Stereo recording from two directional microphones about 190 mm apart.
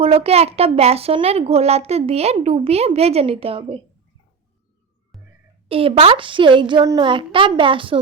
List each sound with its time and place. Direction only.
0.0 s a woman's voice: 30° right (ahead or behind)
5.6 s a woman's voice: 30° right (ahead or behind)